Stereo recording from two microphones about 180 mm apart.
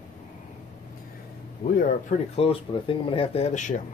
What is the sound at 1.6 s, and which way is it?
Speech, 55° left (ahead or behind).